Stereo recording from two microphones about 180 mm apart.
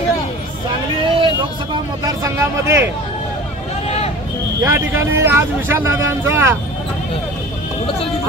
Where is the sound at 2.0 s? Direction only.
20° right (ahead or behind).